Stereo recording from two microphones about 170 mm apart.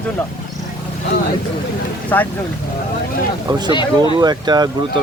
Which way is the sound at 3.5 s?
25° right (ahead or behind).